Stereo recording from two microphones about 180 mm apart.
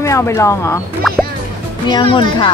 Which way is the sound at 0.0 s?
15° left (ahead or behind).